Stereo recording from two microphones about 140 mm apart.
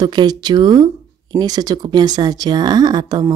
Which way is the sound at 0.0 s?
30° right (ahead or behind).